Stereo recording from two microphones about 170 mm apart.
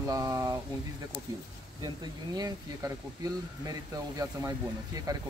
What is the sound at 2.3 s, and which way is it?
Speech, 20° right (ahead or behind).